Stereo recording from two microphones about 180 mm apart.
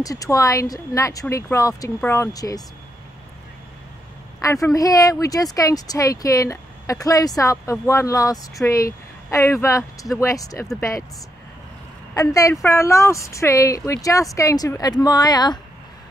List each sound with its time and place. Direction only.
0.0 s a woman's voice: 20° left (ahead or behind)
4.4 s a woman's voice: 20° left (ahead or behind)
12.1 s a woman's voice: 20° left (ahead or behind)